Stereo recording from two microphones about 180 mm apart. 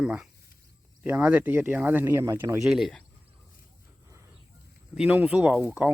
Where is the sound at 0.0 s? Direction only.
5° right (ahead or behind).